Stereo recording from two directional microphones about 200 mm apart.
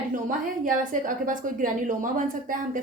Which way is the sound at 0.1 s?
40° right (ahead or behind).